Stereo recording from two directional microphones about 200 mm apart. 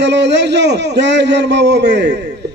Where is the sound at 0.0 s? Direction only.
60° right (ahead or behind).